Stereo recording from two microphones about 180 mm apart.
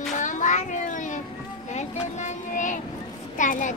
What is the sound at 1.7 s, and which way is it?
Vehicle, 40° left (ahead or behind).